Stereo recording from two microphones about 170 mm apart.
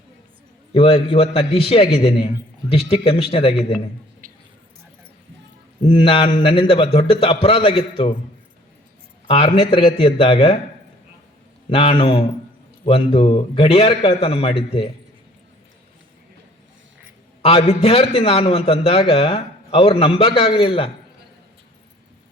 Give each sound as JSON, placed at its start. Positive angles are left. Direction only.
{"t": 0.7, "sound": "a man's voice", "side_deg": 35}
{"t": 4.2, "sound": "a sound", "side_deg": -55}
{"t": 5.8, "sound": "a man's voice", "side_deg": 35}
{"t": 9.2, "sound": "a man's voice", "side_deg": 35}
{"t": 11.7, "sound": "a man's voice", "side_deg": 35}
{"t": 17.4, "sound": "a man's voice", "side_deg": 35}